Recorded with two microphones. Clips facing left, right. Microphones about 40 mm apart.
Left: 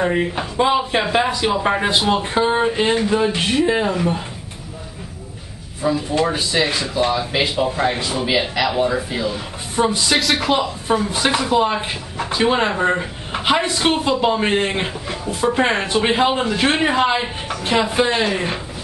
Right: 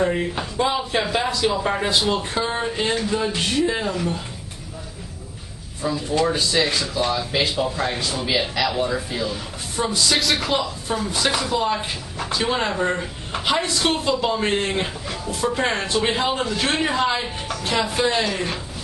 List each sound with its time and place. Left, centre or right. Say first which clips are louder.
0.0 s speech: left 3 dB; left
5.8 s speech: left 3 dB; centre
10.1 s speech: left 4 dB; centre
10.6 s speech: left 5 dB; left